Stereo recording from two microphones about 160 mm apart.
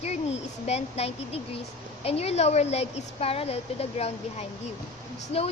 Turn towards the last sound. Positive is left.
turn(degrees=40)  # may be behind; listen again after turning